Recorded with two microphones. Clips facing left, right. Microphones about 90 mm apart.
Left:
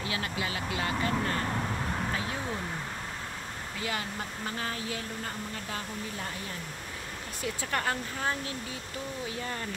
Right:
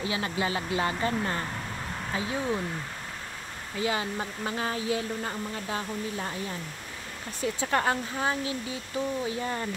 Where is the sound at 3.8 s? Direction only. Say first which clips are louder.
Right 6 dB; 20° right (ahead or behind).